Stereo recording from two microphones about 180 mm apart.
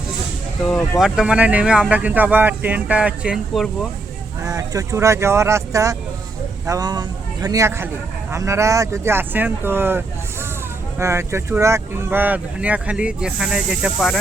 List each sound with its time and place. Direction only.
0.7 s speech: centre (ahead or behind)
4.4 s speech: 20° right (ahead or behind); by 14.2 s centre (ahead or behind)